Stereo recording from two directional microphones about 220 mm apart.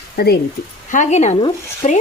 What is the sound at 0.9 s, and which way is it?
Speech, 35° left (ahead or behind).